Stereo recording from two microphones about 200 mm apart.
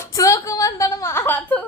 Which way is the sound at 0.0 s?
15° left (ahead or behind).